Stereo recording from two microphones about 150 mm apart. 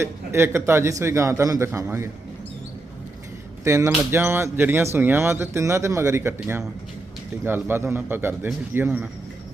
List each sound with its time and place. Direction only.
0.0 s a man's voice: 15° right (ahead or behind)
3.6 s speech: 20° right (ahead or behind)